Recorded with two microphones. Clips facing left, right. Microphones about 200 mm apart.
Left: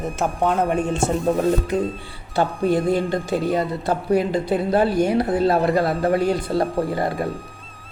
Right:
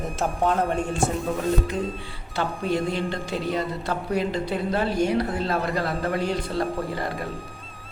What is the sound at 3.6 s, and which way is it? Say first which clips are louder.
Speech: left 5 dB; 35° left (ahead or behind).